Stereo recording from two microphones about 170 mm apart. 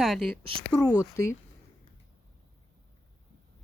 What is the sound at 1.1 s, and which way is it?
Speech, 15° left (ahead or behind).